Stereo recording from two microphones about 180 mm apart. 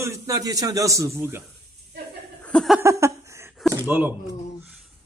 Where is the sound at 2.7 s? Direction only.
15° right (ahead or behind).